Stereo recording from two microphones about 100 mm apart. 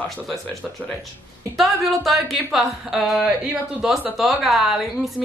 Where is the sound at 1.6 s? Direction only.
Centre (ahead or behind).